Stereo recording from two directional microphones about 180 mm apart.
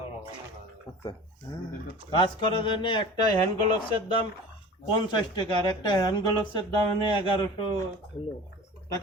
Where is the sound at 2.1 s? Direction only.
25° left (ahead or behind).